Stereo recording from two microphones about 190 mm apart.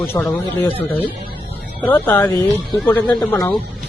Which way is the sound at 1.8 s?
10° left (ahead or behind).